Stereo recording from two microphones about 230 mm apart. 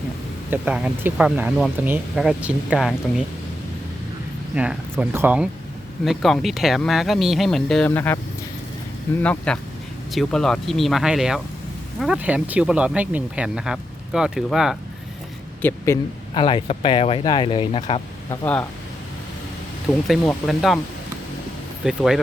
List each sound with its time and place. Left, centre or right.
0.5 s speech: centre
4.5 s speech: centre
9.2 s speech: centre
16.3 s speech: left
20.1 s speech: centre
21.8 s speech: centre